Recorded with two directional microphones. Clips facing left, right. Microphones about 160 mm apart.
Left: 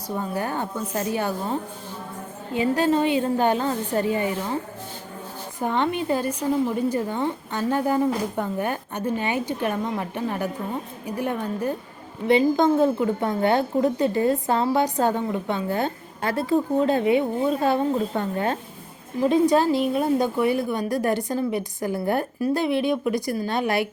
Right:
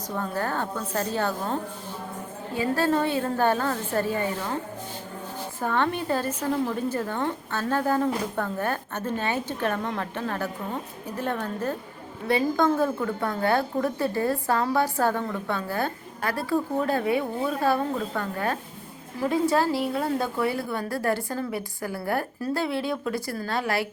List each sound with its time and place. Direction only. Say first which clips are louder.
0.2 s a woman's voice: even; 15° left (ahead or behind)
5.5 s a woman's voice: left 2 dB; 15° left (ahead or behind)